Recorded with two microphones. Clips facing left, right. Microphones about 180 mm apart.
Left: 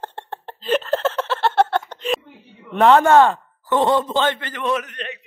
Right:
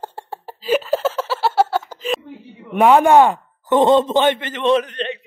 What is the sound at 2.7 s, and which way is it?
Speech, 10° right (ahead or behind).